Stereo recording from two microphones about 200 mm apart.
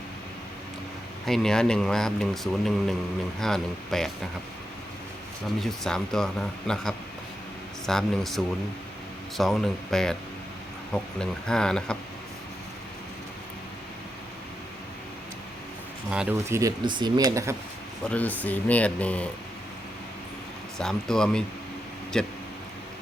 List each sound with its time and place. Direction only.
1.2 s speech: centre (ahead or behind)
5.5 s speech: centre (ahead or behind)
9.4 s speech: centre (ahead or behind)
16.0 s speech: 5° right (ahead or behind)
18.1 s speech: 10° left (ahead or behind)
20.7 s speech: 5° left (ahead or behind)